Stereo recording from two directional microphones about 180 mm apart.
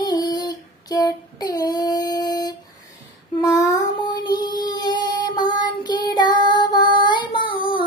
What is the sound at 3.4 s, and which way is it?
Child singing, 20° left (ahead or behind).